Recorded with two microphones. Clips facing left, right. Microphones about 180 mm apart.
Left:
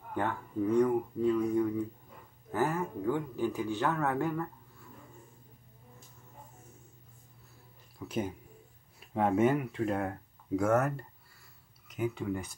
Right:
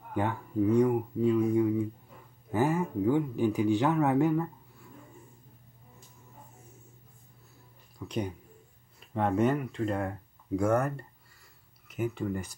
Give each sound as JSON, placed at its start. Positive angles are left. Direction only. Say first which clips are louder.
{"t": 0.1, "sound": "speech", "louder": "right 3 dB", "side_deg": -10}
{"t": 8.0, "sound": "speech", "louder": "right 1 dB", "side_deg": 5}
{"t": 11.9, "sound": "speech", "louder": "right 1 dB", "side_deg": 0}